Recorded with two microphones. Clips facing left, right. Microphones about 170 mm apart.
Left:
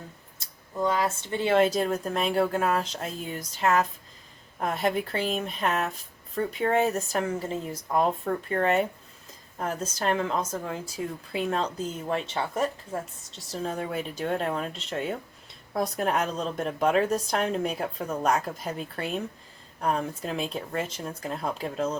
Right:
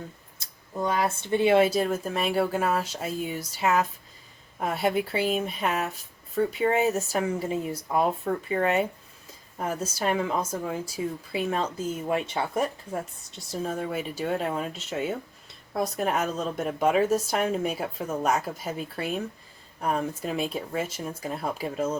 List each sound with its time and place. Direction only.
0.8 s a woman's voice: 15° right (ahead or behind)